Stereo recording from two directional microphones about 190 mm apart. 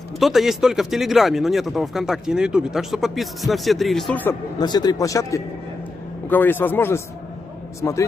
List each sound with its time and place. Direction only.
0.2 s speech: centre (ahead or behind)
4.6 s a man's voice: 20° left (ahead or behind)